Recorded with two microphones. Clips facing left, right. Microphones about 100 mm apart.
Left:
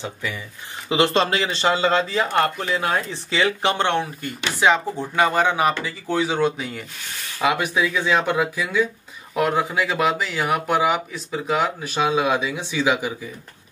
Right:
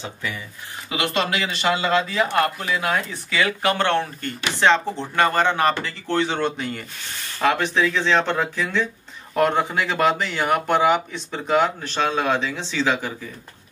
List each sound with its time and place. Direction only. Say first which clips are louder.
0.0 s speech: left 1 dB; 15° left (ahead or behind)
0.8 s speech: left 5 dB; 30° left (ahead or behind); by 13.1 s 15° left (ahead or behind)